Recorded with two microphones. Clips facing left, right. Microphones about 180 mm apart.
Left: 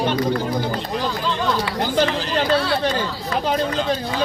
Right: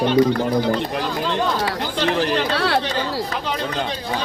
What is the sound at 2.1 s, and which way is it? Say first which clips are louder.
Chatter: even; 60° right (ahead or behind).